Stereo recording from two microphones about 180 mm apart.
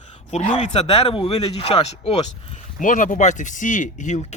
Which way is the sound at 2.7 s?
45° left (ahead or behind).